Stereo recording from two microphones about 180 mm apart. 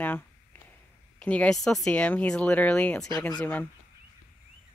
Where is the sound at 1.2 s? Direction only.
5° left (ahead or behind).